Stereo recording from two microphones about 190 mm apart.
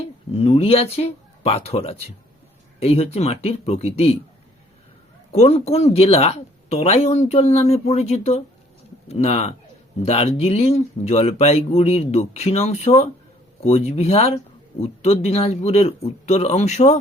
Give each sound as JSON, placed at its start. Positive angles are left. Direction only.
{"t": 0.3, "sound": "speech", "side_deg": 30}
{"t": 5.3, "sound": "speech", "side_deg": 35}